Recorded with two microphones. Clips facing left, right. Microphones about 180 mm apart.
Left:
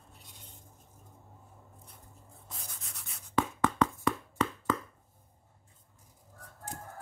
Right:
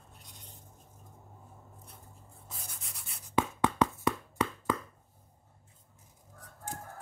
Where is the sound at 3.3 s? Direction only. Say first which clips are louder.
Even; 15° right (ahead or behind).